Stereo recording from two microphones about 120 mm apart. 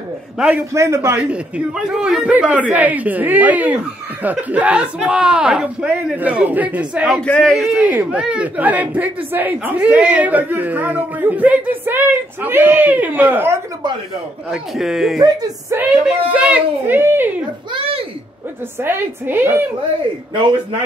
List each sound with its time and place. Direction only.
0.4 s speech: 10° right (ahead or behind)
0.7 s a woman's voice: 25° right (ahead or behind)
1.3 s speech: 5° right (ahead or behind)
7.2 s a man's voice: 10° left (ahead or behind)
7.5 s speech: centre (ahead or behind)
7.8 s speech: 15° right (ahead or behind)
14.5 s speech: 5° right (ahead or behind)
15.1 s speech: 35° right (ahead or behind)
15.9 s speech: 10° right (ahead or behind)
17.7 s a sound: 50° right (ahead or behind)
18.8 s a woman's voice: 20° right (ahead or behind)